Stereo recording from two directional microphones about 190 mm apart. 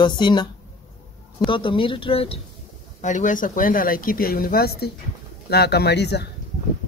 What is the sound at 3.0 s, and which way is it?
Speech, 40° left (ahead or behind).